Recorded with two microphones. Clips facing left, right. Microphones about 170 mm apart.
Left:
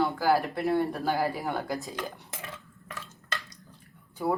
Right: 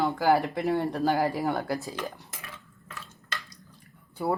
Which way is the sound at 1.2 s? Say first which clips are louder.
Right 3 dB; 15° right (ahead or behind).